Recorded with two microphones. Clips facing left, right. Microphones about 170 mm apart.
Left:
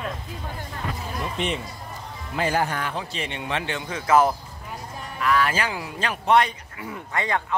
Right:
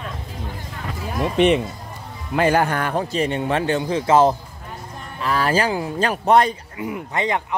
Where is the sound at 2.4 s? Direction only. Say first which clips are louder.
Right 6 dB; 65° right (ahead or behind); by 6.5 s 40° right (ahead or behind).